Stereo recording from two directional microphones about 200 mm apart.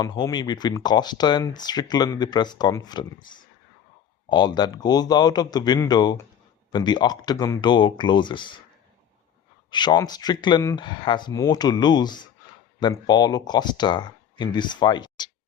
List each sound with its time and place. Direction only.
0.0 s speech: 20° left (ahead or behind)
9.6 s speech: 20° left (ahead or behind)